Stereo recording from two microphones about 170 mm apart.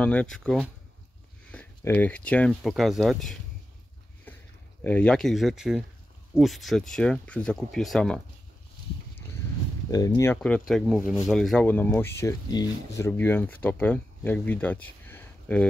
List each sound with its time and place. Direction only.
0.0 s speech: 10° left (ahead or behind)
4.3 s a sound: 10° left (ahead or behind)
4.8 s speech: 5° left (ahead or behind)
9.8 s speech: 20° left (ahead or behind)
10.7 s speech: 5° right (ahead or behind)